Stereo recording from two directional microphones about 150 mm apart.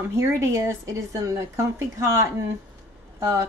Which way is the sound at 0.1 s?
20° right (ahead or behind).